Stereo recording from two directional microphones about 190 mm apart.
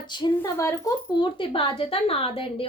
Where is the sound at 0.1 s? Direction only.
20° left (ahead or behind).